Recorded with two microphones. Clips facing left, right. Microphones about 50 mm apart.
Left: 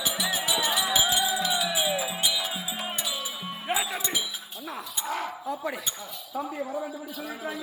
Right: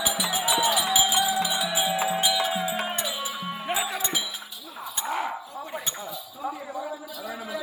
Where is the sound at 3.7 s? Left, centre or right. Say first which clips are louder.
Even; centre.